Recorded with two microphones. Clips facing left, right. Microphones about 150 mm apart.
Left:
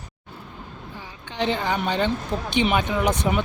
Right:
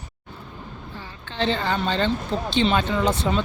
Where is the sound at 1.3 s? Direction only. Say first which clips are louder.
Even; 15° left (ahead or behind).